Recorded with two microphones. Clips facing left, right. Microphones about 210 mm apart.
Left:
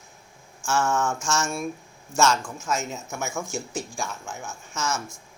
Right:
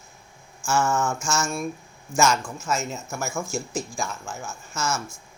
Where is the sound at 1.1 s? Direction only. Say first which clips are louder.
Even; 10° right (ahead or behind).